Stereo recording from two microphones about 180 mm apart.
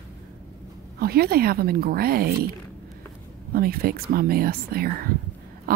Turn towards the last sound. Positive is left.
turn(degrees=-50)  # may be behind; listen again after turning